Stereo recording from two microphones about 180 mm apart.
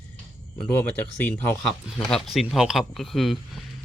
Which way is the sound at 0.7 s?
10° left (ahead or behind).